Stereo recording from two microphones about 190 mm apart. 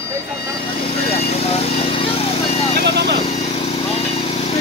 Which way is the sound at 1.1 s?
30° left (ahead or behind).